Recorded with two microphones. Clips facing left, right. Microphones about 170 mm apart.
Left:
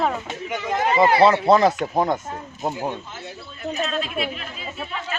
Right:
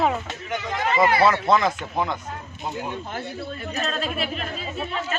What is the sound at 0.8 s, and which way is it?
Speech, 30° left (ahead or behind).